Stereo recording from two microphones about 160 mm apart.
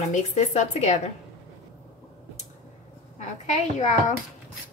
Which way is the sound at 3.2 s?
50° left (ahead or behind).